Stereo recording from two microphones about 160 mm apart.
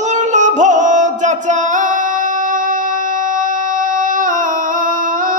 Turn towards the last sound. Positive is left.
turn(degrees=-55)  # may be behind; listen again after turning